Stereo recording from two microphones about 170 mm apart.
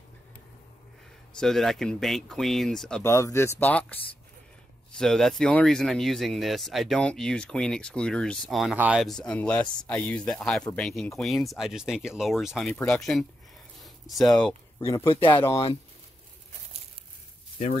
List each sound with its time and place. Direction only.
1.4 s speech: centre (ahead or behind)
3.0 s speech: 15° left (ahead or behind)
14.8 s speech: 15° left (ahead or behind)